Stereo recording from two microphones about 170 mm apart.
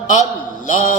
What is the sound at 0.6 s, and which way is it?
Mantra, 45° left (ahead or behind).